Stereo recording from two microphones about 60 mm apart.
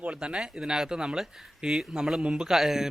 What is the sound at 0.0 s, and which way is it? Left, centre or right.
Speech, centre.